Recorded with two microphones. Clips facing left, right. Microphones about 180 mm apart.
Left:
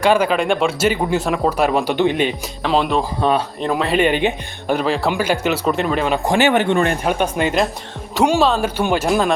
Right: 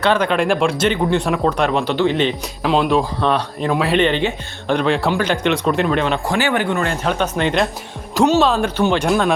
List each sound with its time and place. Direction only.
0.0 s speech: 10° left (ahead or behind)
2.6 s speech: centre (ahead or behind)
4.0 s speech: 10° left (ahead or behind)
6.2 s speech: 20° left (ahead or behind)
6.9 s speech: 10° left (ahead or behind)
8.8 s speech: 10° left (ahead or behind)